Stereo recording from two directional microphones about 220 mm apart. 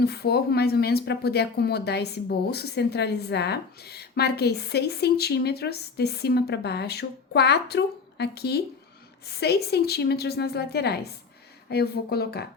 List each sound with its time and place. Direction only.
0.0 s speech: 45° left (ahead or behind)